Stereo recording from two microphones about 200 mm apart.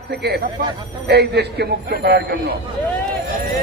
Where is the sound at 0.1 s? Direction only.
55° right (ahead or behind).